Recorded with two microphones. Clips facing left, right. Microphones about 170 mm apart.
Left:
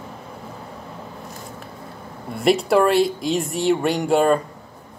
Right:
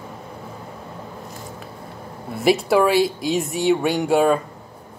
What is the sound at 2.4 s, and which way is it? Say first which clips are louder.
Speech: even; centre (ahead or behind).